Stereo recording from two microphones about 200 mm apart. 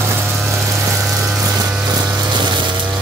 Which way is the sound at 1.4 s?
15° right (ahead or behind).